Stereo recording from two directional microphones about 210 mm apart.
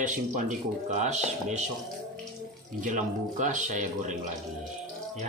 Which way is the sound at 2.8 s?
35° right (ahead or behind).